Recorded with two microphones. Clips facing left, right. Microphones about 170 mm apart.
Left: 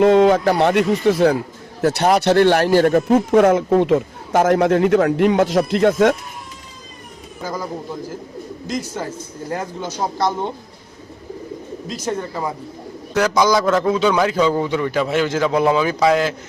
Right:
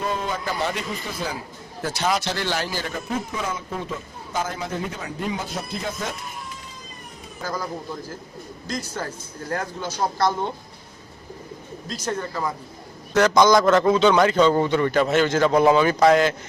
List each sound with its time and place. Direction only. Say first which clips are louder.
0.0 s speech: left 15 dB; 80° left
7.4 s a man's voice: left 3 dB; 15° left (ahead or behind)
8.7 s a man's voice: left 4 dB; 20° left (ahead or behind)
12.0 s a man's voice: left 3 dB; 25° left (ahead or behind)
13.1 s a man's voice: even; 5° left (ahead or behind)